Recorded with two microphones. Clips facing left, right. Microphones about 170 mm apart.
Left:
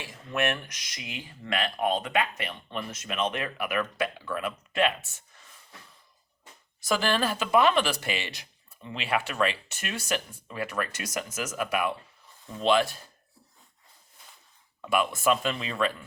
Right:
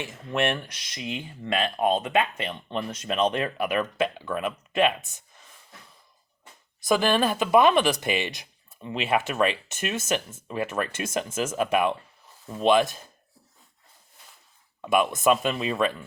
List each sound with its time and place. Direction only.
0.0 s speech: 25° right (ahead or behind)
6.8 s speech: 20° right (ahead or behind)
14.8 s speech: 20° right (ahead or behind)